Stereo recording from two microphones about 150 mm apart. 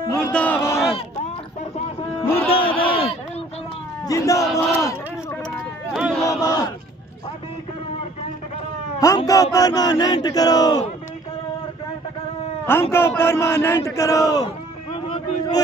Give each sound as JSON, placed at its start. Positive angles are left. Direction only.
{"t": 0.2, "sound": "speech", "side_deg": 10}
{"t": 2.2, "sound": "music", "side_deg": 15}
{"t": 2.5, "sound": "a sound", "side_deg": 35}
{"t": 4.0, "sound": "speech", "side_deg": 20}
{"t": 5.9, "sound": "battle cry", "side_deg": -5}
{"t": 6.2, "sound": "speech", "side_deg": 25}
{"t": 9.0, "sound": "a sound", "side_deg": 20}
{"t": 12.9, "sound": "speech", "side_deg": 15}